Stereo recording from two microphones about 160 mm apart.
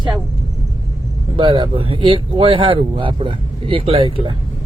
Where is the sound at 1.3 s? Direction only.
35° right (ahead or behind).